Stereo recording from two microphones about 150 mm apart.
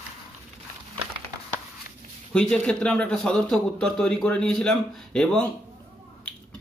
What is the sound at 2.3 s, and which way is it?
A man's voice, 5° left (ahead or behind).